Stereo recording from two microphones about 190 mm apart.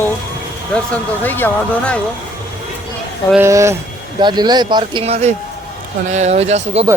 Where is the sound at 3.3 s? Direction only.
15° right (ahead or behind); by 6.9 s 35° right (ahead or behind).